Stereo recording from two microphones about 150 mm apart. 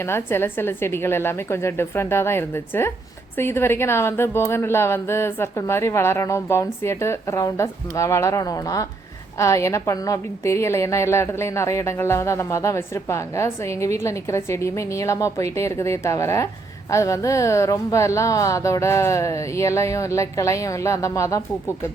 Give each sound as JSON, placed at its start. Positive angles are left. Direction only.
{"t": 0.0, "sound": "a woman's voice", "side_deg": 15}